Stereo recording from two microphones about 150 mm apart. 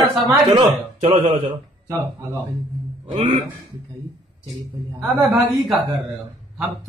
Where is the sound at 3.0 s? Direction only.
40° right (ahead or behind).